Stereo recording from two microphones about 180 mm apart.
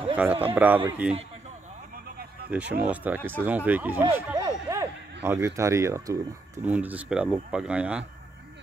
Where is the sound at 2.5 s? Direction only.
5° right (ahead or behind).